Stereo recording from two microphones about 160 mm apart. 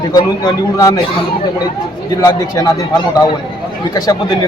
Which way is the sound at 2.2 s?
25° left (ahead or behind).